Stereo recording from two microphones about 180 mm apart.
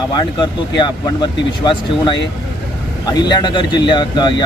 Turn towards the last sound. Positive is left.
turn(degrees=25)  # may be behind; listen again after turning